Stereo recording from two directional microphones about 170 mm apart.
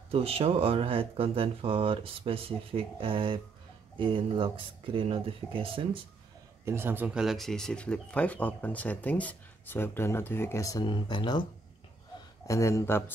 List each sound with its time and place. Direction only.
0.1 s speech: 35° right (ahead or behind)
6.6 s speech: 15° right (ahead or behind); by 11.4 s 25° left (ahead or behind)
12.4 s speech: 20° left (ahead or behind)